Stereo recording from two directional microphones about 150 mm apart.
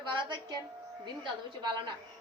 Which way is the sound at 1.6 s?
30° right (ahead or behind).